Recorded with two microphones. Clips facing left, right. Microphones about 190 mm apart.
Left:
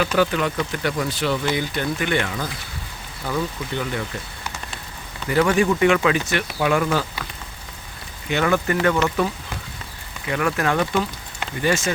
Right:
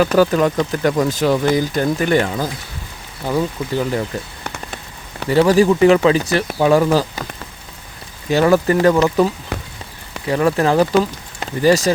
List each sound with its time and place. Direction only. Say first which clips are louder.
0.2 s speech: right 6 dB; 40° right (ahead or behind)
5.3 s speech: right 6 dB; 35° right (ahead or behind)
8.3 s speech: right 7 dB; 35° right (ahead or behind)
10.2 s speech: right 6 dB; 30° right (ahead or behind)